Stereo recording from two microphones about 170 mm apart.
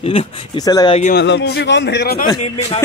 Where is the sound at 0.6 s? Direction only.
20° left (ahead or behind).